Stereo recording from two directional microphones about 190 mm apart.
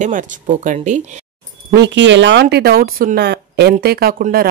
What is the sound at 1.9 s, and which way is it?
Speech, 75° right (ahead or behind).